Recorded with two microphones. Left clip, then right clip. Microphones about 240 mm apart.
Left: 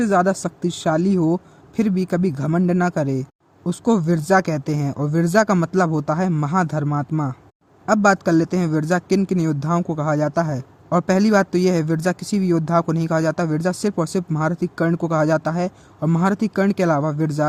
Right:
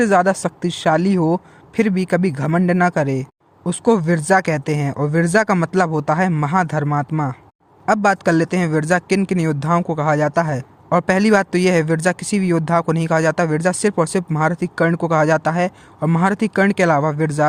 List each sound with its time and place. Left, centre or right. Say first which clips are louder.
0.0 s a man's voice: right 3 dB; right